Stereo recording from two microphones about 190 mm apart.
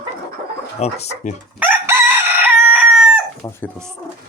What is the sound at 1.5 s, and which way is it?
Crowing, 10° right (ahead or behind).